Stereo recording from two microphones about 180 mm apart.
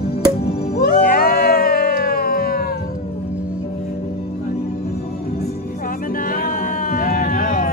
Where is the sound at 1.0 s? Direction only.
55° left (ahead or behind).